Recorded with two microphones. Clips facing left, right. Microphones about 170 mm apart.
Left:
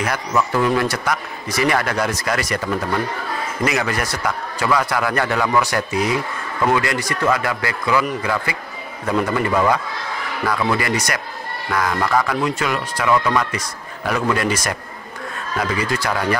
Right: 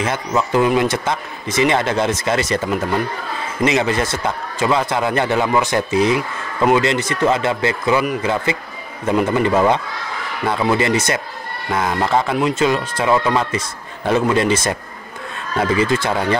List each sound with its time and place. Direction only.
0.0 s a man's voice: 25° right (ahead or behind)